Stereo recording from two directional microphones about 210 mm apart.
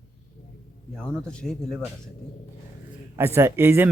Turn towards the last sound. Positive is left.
turn(degrees=-10)  # may be behind; listen again after turning